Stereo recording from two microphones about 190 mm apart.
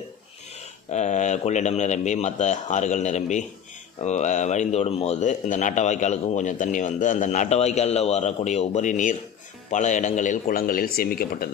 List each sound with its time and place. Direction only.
0.8 s a man's voice: 40° left (ahead or behind)